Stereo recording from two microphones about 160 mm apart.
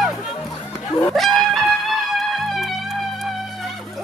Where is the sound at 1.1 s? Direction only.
Centre (ahead or behind).